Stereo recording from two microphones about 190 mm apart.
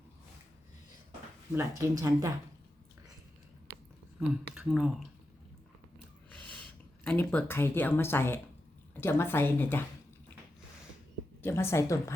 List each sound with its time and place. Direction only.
1.5 s speech: 15° right (ahead or behind)
4.3 s speech: 5° right (ahead or behind)
6.5 s a woman's voice: 5° left (ahead or behind)
11.4 s a woman's voice: 15° left (ahead or behind)